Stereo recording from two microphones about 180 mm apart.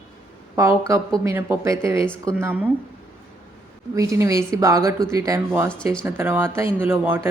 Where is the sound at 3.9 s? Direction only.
15° right (ahead or behind).